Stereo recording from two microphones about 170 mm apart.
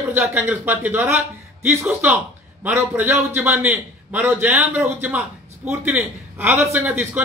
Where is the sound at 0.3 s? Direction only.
10° right (ahead or behind).